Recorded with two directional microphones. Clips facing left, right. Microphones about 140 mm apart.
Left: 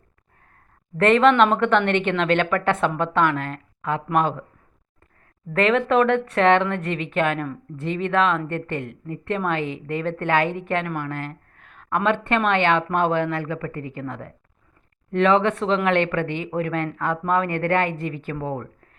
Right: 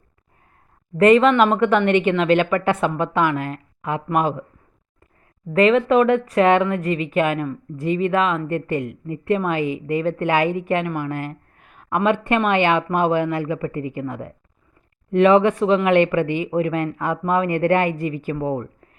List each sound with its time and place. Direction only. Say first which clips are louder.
0.9 s a woman's voice: right 2 dB; 5° right (ahead or behind)
5.5 s speech: right 3 dB; 5° right (ahead or behind)